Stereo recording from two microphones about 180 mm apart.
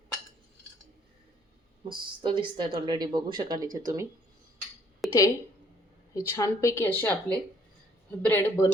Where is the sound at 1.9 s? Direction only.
25° right (ahead or behind).